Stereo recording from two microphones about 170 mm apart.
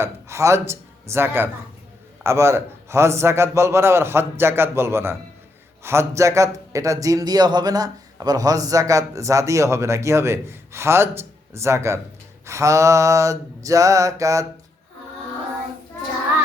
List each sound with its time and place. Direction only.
0.0 s a man's voice: 15° right (ahead or behind)
12.5 s mantra: 15° right (ahead or behind)